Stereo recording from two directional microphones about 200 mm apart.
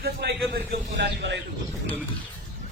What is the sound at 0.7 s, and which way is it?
Speech, 60° right (ahead or behind).